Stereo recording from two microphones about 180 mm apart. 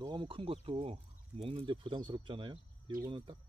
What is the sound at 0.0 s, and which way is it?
Speech, 25° right (ahead or behind).